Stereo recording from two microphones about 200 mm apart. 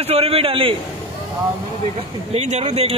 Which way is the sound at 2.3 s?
35° right (ahead or behind).